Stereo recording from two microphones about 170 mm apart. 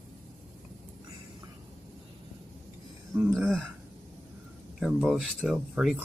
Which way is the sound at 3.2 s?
10° right (ahead or behind).